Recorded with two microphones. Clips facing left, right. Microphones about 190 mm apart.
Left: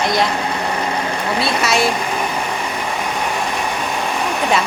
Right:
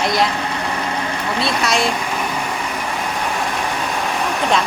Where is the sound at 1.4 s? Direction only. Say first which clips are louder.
Left 1 dB; centre (ahead or behind).